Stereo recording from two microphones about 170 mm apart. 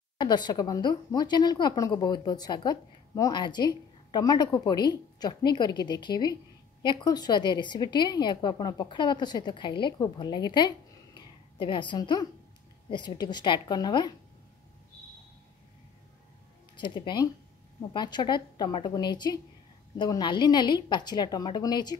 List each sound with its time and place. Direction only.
0.2 s a woman's voice: 25° left (ahead or behind)
16.7 s a woman's voice: 30° left (ahead or behind)